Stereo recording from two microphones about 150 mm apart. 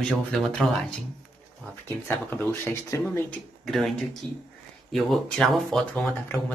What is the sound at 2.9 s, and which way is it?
Speech, 20° left (ahead or behind).